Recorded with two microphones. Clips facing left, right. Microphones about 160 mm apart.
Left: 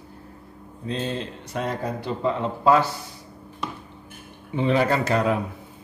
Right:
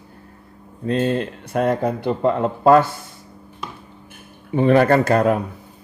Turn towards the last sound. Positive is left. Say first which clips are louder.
# right 6 dB
turn(degrees=-50)  # may be behind; listen again after turning